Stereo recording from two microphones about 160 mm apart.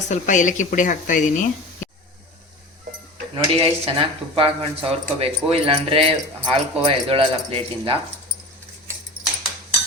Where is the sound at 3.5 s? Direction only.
35° right (ahead or behind).